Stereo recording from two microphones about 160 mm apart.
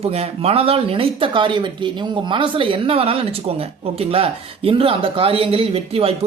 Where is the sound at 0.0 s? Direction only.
40° right (ahead or behind).